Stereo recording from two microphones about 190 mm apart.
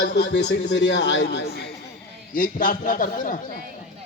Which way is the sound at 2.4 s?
45° left (ahead or behind).